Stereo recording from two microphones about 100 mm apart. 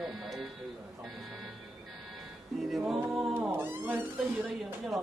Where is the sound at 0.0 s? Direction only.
Centre (ahead or behind).